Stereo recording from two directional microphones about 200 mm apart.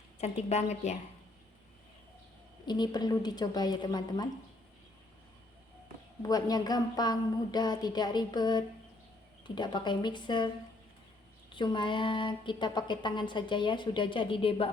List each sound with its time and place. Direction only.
0.2 s a woman's voice: 35° left (ahead or behind)
2.6 s speech: 20° left (ahead or behind)
6.2 s speech: 20° left (ahead or behind)
11.5 s speech: 25° left (ahead or behind)